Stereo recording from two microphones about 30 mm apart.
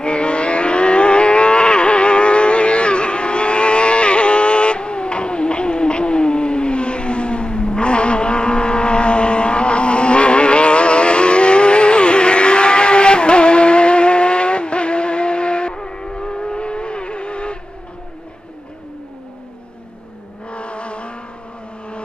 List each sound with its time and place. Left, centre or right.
0.0 s livestock: left
20.4 s vehicle: left